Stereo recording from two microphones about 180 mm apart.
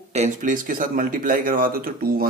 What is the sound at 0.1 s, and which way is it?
Speech, 40° right (ahead or behind).